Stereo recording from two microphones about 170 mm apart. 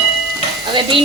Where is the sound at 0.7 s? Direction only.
30° right (ahead or behind).